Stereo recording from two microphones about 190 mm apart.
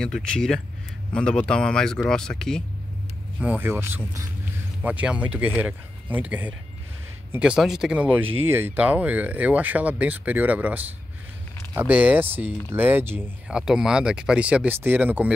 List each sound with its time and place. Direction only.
0.0 s speech: 5° left (ahead or behind)
3.3 s speech: 10° right (ahead or behind)